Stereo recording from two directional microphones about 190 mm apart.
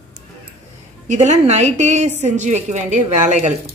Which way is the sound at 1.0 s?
40° right (ahead or behind).